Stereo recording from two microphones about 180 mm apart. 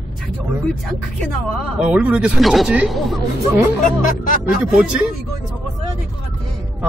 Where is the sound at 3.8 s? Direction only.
45° left (ahead or behind).